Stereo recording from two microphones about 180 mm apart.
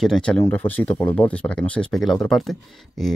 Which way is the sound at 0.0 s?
5° left (ahead or behind).